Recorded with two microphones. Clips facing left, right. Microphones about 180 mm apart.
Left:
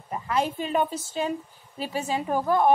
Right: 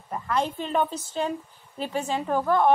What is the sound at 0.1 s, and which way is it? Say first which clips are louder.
A woman's voice: even; 10° left (ahead or behind).